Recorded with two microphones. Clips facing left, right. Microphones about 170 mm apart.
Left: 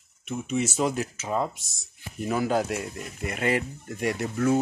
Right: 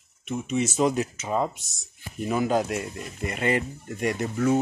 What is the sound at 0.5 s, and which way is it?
Speech, 5° left (ahead or behind).